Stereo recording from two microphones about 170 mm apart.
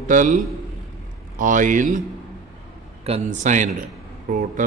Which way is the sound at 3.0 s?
40° right (ahead or behind).